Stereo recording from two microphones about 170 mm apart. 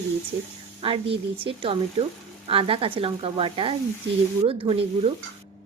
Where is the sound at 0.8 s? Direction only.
30° right (ahead or behind).